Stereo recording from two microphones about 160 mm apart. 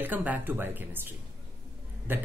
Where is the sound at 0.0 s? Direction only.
10° right (ahead or behind).